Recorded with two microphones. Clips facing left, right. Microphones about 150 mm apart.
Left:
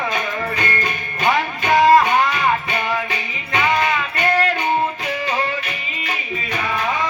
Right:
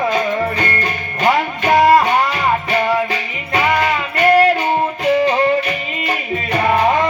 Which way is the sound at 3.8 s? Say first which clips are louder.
Right 4 dB; 35° right (ahead or behind).